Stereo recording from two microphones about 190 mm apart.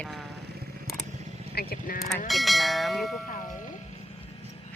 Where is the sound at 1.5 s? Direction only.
55° left (ahead or behind).